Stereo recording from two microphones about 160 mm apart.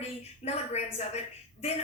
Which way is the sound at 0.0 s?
40° left (ahead or behind).